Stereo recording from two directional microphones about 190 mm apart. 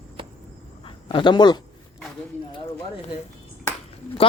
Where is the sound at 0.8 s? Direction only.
25° left (ahead or behind).